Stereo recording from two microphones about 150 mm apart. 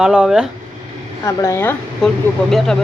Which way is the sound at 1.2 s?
20° left (ahead or behind).